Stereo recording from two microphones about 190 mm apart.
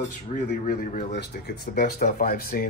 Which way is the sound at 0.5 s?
45° left (ahead or behind).